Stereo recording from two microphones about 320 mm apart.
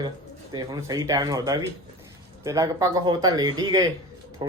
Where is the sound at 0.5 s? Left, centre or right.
Centre.